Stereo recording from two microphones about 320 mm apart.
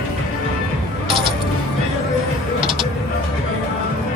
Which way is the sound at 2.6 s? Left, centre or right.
Centre.